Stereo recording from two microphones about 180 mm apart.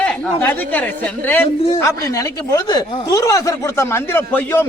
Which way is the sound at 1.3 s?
10° left (ahead or behind).